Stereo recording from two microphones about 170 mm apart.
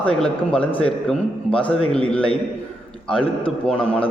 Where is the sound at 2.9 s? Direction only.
5° left (ahead or behind).